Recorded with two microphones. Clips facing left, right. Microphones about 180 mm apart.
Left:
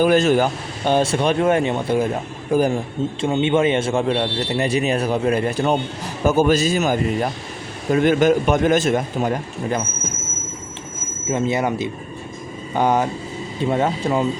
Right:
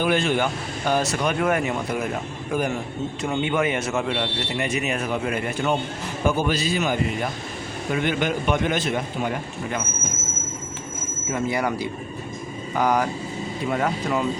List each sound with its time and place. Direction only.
0.0 s a man's voice: 40° left (ahead or behind)
0.9 s a man's voice: 30° left (ahead or behind)
11.3 s speech: 25° left (ahead or behind)